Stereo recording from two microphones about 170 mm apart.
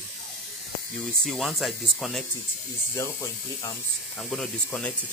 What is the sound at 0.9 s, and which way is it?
Speech, centre (ahead or behind).